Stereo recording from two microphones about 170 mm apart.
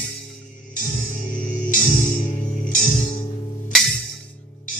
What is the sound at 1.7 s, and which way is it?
Music, 50° left (ahead or behind).